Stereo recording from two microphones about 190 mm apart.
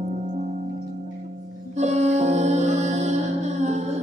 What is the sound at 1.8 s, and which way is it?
Music, 35° right (ahead or behind).